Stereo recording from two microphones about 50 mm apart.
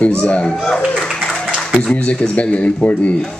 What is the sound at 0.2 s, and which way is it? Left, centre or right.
Speech, left.